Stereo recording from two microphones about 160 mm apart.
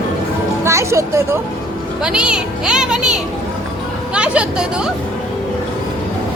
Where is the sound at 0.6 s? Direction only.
20° right (ahead or behind).